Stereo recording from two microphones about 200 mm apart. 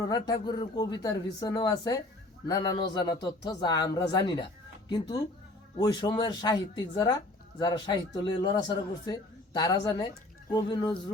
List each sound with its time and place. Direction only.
0.1 s speech: 20° left (ahead or behind)